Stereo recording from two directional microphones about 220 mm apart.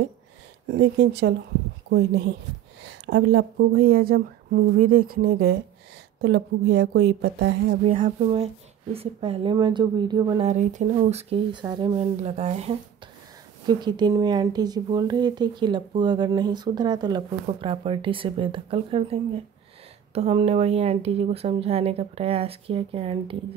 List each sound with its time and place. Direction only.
0.7 s a woman's voice: 50° right (ahead or behind)
3.1 s a woman's voice: 50° right (ahead or behind)
8.0 s speech: 25° right (ahead or behind)
10.4 s speech: 35° right (ahead or behind)
20.2 s speech: 30° right (ahead or behind)